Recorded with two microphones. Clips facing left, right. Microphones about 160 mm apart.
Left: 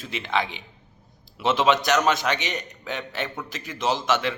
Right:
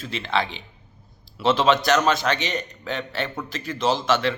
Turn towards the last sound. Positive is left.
turn(degrees=15)  # may be behind; listen again after turning